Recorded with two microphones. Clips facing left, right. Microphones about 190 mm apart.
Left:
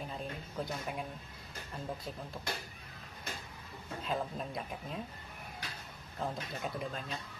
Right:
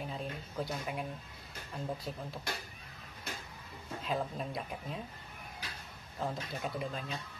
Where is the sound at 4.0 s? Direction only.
Centre (ahead or behind).